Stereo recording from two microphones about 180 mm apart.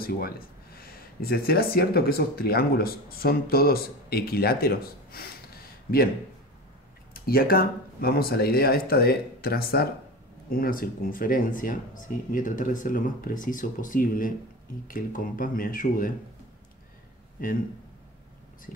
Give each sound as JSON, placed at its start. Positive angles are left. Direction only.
{"t": 0.0, "sound": "speech", "side_deg": 55}
{"t": 7.2, "sound": "speech", "side_deg": 55}